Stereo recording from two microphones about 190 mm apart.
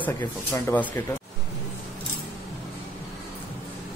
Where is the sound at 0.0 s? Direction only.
20° left (ahead or behind).